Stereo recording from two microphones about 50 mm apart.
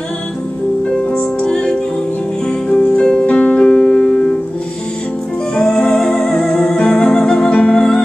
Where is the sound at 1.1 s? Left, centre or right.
Left.